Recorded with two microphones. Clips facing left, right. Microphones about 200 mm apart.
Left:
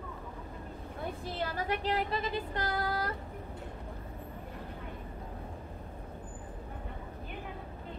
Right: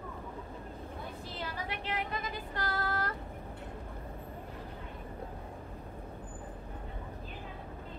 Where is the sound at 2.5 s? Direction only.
20° left (ahead or behind).